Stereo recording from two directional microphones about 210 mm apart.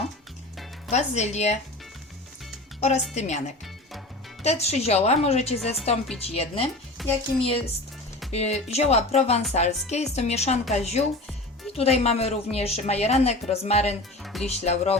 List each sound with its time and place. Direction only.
0.9 s a woman's voice: 30° left (ahead or behind)
3.2 s a woman's voice: 35° left (ahead or behind)
4.4 s a woman's voice: 30° left (ahead or behind)
7.0 s speech: centre (ahead or behind)
7.3 s a woman's voice: 25° left (ahead or behind)
14.2 s music: centre (ahead or behind)
14.4 s a woman's voice: 30° left (ahead or behind)